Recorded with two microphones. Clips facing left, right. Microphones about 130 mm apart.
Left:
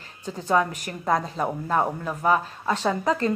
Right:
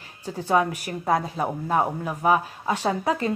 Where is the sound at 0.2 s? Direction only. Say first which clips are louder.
Right 1 dB; 10° right (ahead or behind).